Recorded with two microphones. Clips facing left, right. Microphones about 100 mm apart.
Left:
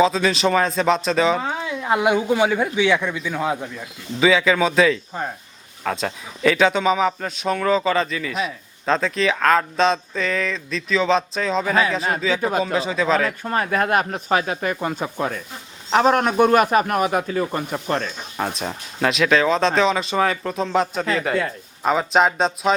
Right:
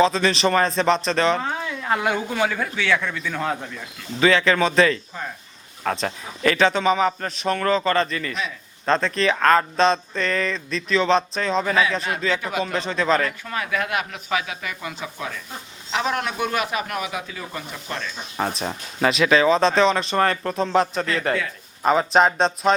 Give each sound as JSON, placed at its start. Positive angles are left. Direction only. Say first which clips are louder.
{"t": 0.0, "sound": "speech", "louder": "left 1 dB", "side_deg": 0}
{"t": 12.4, "sound": "speech", "louder": "left 5 dB", "side_deg": 40}
{"t": 12.6, "sound": "speech", "louder": "left 2 dB", "side_deg": 5}
{"t": 13.4, "sound": "a man's voice", "louder": "left 5 dB", "side_deg": 40}
{"t": 18.3, "sound": "speech", "louder": "even", "side_deg": 0}